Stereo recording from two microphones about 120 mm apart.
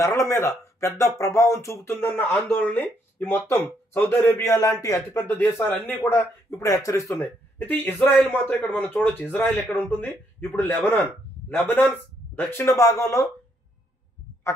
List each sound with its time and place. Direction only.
0.0 s a man's voice: 25° left (ahead or behind)
7.2 s a man's voice: 15° left (ahead or behind)